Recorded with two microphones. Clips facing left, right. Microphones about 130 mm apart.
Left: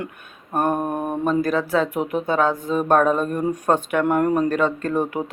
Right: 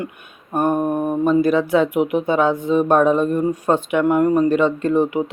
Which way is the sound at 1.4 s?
40° left (ahead or behind).